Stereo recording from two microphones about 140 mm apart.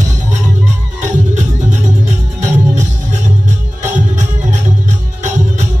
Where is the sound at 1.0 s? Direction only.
60° right (ahead or behind).